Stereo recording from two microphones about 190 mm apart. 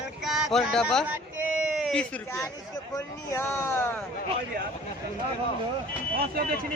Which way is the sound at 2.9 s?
15° left (ahead or behind).